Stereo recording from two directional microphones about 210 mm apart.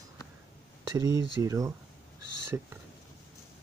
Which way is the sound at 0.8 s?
20° right (ahead or behind).